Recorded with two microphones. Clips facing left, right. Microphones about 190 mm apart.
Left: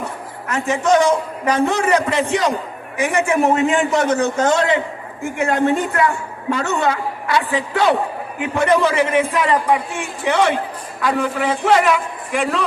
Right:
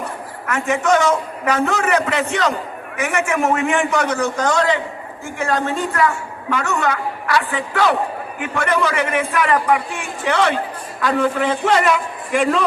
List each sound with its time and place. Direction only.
0.4 s a man's voice: 30° left (ahead or behind)
10.2 s a man's voice: 15° left (ahead or behind)